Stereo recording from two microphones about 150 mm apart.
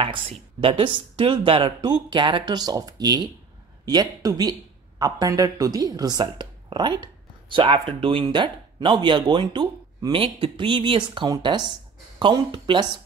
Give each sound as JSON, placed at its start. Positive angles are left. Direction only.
{"t": 0.0, "sound": "speech", "side_deg": -35}